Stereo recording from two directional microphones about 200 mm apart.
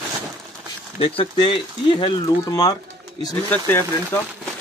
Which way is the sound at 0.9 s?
30° left (ahead or behind).